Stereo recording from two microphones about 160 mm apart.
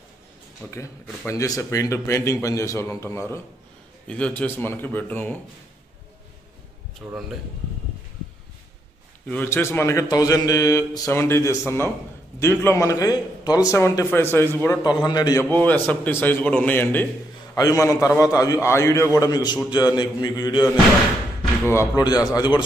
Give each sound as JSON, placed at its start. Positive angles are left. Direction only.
{"t": 0.7, "sound": "a man's voice", "side_deg": 20}
{"t": 7.0, "sound": "a man's voice", "side_deg": 0}
{"t": 9.3, "sound": "a man's voice", "side_deg": 15}
{"t": 14.8, "sound": "speech", "side_deg": 25}
{"t": 15.5, "sound": "a man's voice", "side_deg": 10}
{"t": 21.7, "sound": "speech", "side_deg": 25}